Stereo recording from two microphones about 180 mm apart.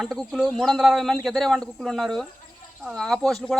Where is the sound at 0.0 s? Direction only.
Centre (ahead or behind).